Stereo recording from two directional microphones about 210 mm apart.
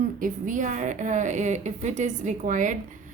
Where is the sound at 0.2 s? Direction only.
35° right (ahead or behind).